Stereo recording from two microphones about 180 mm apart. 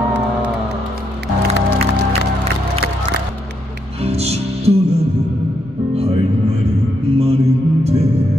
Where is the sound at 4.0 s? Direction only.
35° right (ahead or behind).